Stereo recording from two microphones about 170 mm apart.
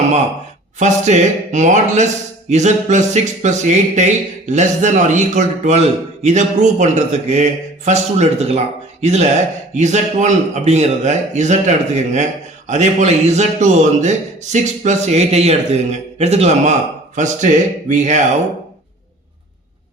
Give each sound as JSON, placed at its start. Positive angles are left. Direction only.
{"t": 0.8, "sound": "a man's voice", "side_deg": -45}